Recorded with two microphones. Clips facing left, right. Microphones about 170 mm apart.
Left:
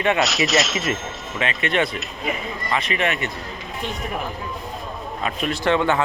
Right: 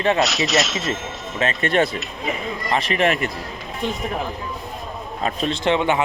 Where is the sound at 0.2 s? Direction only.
Centre (ahead or behind).